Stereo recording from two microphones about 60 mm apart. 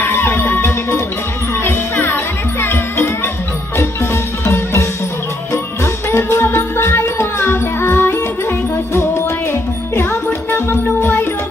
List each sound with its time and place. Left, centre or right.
0.0 s music: left
6.0 s music: left
11.0 s music: left